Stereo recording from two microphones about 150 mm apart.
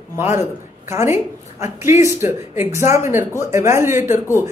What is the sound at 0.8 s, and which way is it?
A man's voice, 20° right (ahead or behind).